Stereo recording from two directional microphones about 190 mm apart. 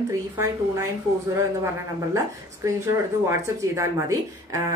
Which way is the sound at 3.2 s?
15° right (ahead or behind).